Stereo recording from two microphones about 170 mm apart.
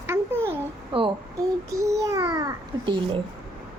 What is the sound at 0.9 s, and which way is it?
Speech, 30° right (ahead or behind).